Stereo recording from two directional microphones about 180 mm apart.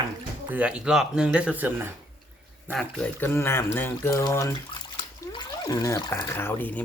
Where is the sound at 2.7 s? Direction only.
5° left (ahead or behind).